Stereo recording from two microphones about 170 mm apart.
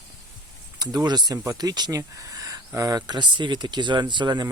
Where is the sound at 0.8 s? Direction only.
25° right (ahead or behind).